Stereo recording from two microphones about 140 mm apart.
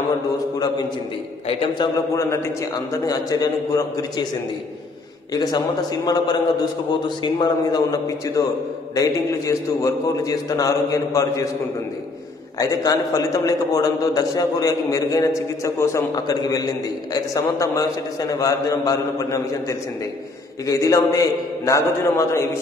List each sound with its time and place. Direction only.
2.1 s a man's voice: 20° left (ahead or behind)
5.3 s a man's voice: 25° left (ahead or behind)
12.5 s a man's voice: 25° left (ahead or behind)